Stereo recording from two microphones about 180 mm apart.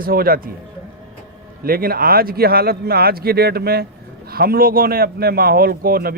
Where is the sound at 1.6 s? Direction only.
55° right (ahead or behind).